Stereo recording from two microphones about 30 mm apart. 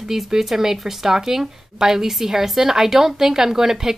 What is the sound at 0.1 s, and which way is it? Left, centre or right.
Speech, centre.